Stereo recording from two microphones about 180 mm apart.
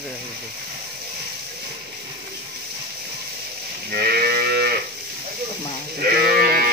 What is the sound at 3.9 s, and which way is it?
Moo, 60° right (ahead or behind).